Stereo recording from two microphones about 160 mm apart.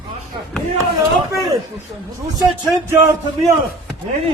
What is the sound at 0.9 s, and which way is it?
Speech, 20° right (ahead or behind).